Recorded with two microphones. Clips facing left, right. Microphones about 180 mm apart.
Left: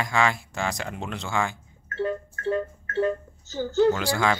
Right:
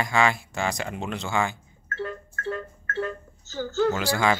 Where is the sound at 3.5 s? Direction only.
15° left (ahead or behind).